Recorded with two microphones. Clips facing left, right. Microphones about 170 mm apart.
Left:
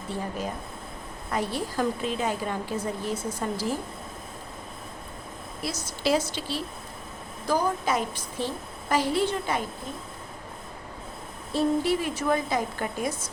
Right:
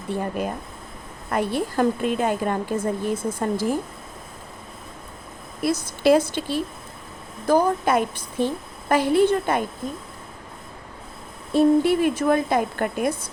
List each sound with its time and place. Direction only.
0.2 s a woman's voice: 60° right (ahead or behind)
5.6 s a woman's voice: 55° right (ahead or behind)
11.5 s a woman's voice: 55° right (ahead or behind)